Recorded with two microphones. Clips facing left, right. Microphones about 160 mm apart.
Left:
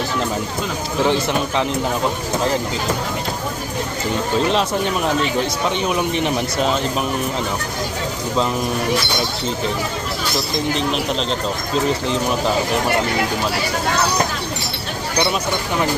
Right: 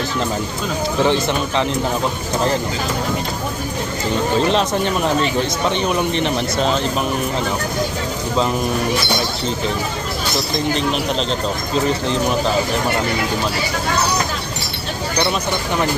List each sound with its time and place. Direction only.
1.0 s speech: 5° left (ahead or behind)
5.6 s speech: 5° left (ahead or behind)
10.8 s speech: centre (ahead or behind)